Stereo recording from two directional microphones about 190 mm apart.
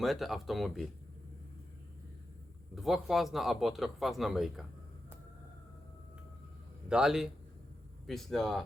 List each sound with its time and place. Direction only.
0.0 s speech: centre (ahead or behind)
2.7 s speech: centre (ahead or behind)
6.8 s a man's voice: 5° right (ahead or behind)